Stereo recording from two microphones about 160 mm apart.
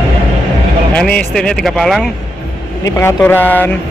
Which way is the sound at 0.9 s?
5° left (ahead or behind).